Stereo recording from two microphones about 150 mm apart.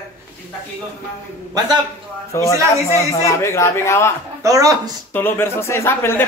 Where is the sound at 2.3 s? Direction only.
20° left (ahead or behind).